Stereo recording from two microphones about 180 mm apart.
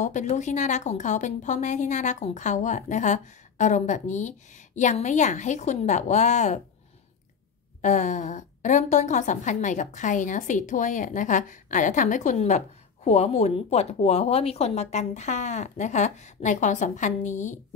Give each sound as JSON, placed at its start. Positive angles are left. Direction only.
{"t": 0.0, "sound": "a woman's voice", "side_deg": 40}
{"t": 7.8, "sound": "a woman's voice", "side_deg": 40}